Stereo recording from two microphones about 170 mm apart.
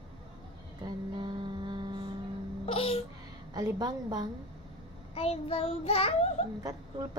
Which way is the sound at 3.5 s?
25° right (ahead or behind).